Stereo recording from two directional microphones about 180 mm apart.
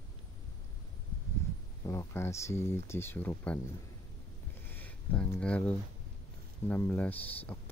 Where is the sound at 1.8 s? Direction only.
15° left (ahead or behind).